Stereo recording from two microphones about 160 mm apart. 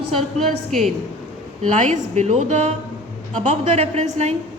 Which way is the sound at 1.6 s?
50° right (ahead or behind).